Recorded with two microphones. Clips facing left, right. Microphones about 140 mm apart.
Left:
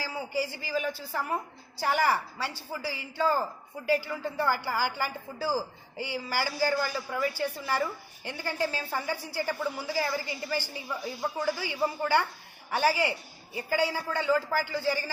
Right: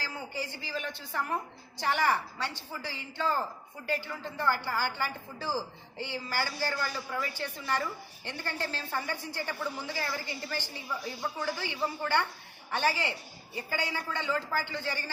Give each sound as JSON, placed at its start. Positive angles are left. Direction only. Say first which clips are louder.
{"t": 0.0, "sound": "a woman's voice", "louder": "left 6 dB", "side_deg": 10}